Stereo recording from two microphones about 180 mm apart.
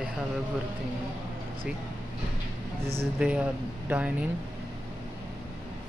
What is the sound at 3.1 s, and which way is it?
Speech, 5° right (ahead or behind).